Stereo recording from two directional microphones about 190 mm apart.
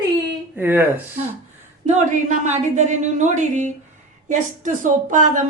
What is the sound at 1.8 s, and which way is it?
Speech, 40° right (ahead or behind).